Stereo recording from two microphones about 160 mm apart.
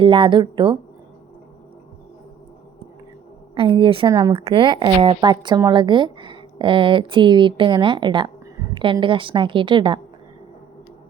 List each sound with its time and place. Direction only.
0.0 s a woman's voice: 35° right (ahead or behind)
3.5 s a woman's voice: 35° right (ahead or behind)
4.1 s speech: 20° right (ahead or behind)
4.4 s a woman's voice: 35° right (ahead or behind)